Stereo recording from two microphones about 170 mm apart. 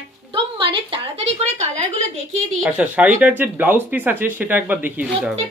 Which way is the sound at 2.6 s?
10° right (ahead or behind).